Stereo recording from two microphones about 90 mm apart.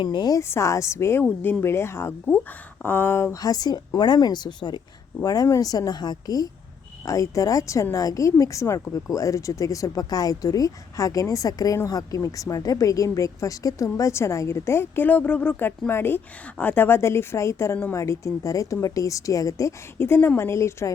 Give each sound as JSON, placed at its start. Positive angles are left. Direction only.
{"t": 0.0, "sound": "speech", "side_deg": 60}
{"t": 0.4, "sound": "a woman's voice", "side_deg": 30}
{"t": 3.3, "sound": "a woman's voice", "side_deg": 45}
{"t": 5.2, "sound": "a woman's voice", "side_deg": 40}
{"t": 20.0, "sound": "a woman's voice", "side_deg": 25}